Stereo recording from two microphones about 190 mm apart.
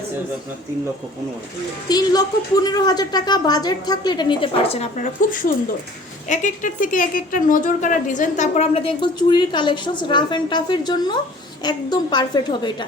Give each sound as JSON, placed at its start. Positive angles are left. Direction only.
{"t": 1.9, "sound": "a woman's voice", "side_deg": 20}
{"t": 6.2, "sound": "a woman's voice", "side_deg": 40}